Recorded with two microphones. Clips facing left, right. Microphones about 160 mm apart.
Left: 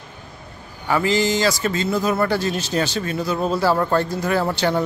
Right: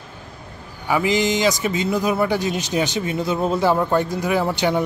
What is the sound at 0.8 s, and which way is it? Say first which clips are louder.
Speech: even; 15° right (ahead or behind).